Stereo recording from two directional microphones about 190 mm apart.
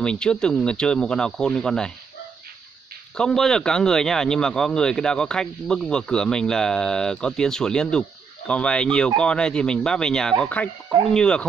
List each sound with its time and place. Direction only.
0.0 s speech: 5° left (ahead or behind)
3.2 s speech: 5° left (ahead or behind)